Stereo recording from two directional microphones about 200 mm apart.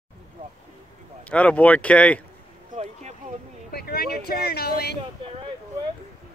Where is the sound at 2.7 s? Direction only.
35° right (ahead or behind).